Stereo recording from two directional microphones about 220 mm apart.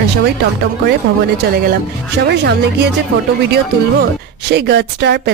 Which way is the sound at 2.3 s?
50° right (ahead or behind).